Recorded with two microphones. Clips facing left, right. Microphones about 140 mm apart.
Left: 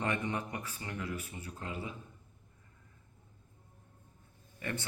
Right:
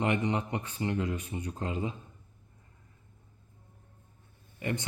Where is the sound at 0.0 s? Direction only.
20° right (ahead or behind).